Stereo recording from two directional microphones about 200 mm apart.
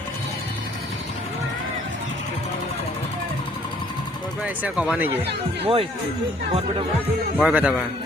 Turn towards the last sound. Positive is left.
turn(degrees=-5)  # may be behind; listen again after turning